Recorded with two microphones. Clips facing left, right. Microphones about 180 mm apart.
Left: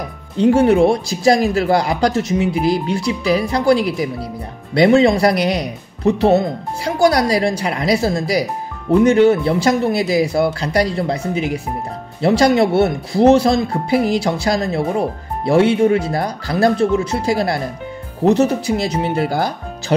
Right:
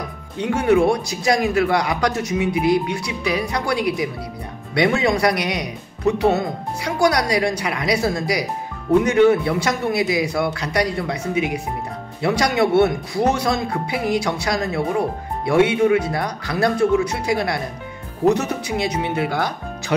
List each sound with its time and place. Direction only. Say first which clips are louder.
0.4 s speech: left 5 dB; 30° left (ahead or behind)